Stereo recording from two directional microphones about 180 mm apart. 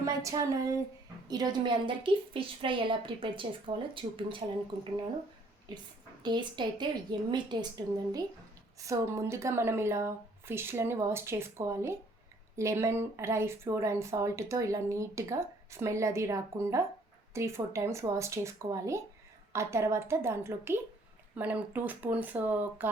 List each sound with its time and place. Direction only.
0.0 s a woman's voice: 20° right (ahead or behind)
6.2 s a woman's voice: 25° right (ahead or behind)
8.8 s speech: 15° right (ahead or behind)